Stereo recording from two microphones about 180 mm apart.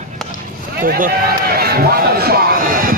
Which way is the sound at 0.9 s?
55° right (ahead or behind).